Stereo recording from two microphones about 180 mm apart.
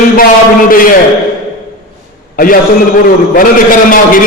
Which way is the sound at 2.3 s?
50° left (ahead or behind).